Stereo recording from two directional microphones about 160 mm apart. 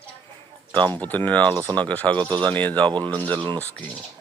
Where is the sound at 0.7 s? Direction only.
10° left (ahead or behind).